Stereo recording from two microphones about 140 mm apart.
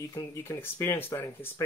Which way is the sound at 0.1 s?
20° left (ahead or behind).